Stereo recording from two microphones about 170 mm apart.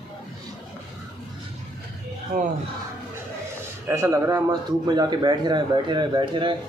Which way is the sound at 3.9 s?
15° right (ahead or behind).